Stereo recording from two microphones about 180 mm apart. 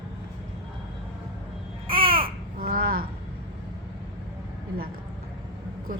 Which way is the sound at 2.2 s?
55° right (ahead or behind).